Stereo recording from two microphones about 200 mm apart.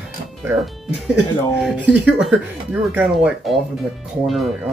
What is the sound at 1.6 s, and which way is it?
Speech, centre (ahead or behind).